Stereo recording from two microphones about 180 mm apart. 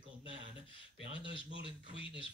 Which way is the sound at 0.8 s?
30° left (ahead or behind).